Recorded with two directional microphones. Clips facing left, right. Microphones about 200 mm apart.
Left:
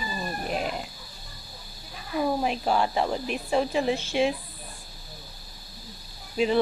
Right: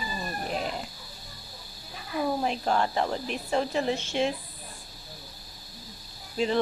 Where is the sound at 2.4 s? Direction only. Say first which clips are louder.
Left 2 dB; 10° left (ahead or behind).